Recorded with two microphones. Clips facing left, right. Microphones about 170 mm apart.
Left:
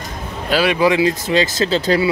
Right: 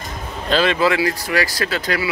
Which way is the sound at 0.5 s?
10° left (ahead or behind).